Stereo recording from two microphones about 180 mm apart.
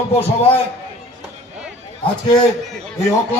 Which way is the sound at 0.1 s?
35° left (ahead or behind).